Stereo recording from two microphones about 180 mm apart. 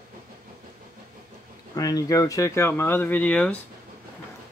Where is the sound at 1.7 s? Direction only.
20° left (ahead or behind).